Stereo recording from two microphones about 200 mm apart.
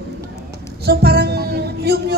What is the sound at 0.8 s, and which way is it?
Music, 55° right (ahead or behind).